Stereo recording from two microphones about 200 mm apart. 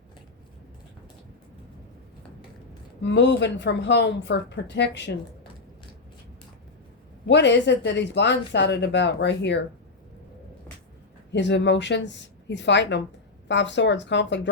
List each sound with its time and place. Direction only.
3.0 s speech: 60° left (ahead or behind)
7.3 s speech: 60° left (ahead or behind)
11.3 s speech: 65° left (ahead or behind)